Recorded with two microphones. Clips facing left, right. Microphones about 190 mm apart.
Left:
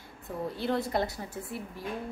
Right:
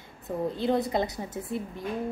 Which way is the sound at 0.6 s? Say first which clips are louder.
Right 3 dB; 20° right (ahead or behind).